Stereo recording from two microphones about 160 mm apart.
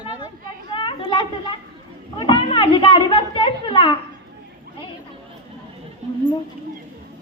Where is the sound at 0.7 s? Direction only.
30° left (ahead or behind).